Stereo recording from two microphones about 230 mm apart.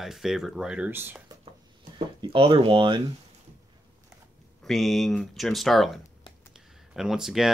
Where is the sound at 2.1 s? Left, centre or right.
Right.